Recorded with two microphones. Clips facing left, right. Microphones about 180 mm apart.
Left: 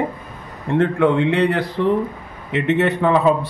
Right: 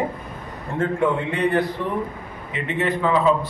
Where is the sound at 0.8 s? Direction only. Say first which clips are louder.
Left 4 dB; 80° left.